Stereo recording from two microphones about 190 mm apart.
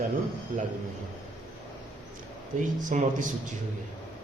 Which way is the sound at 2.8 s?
45° right (ahead or behind).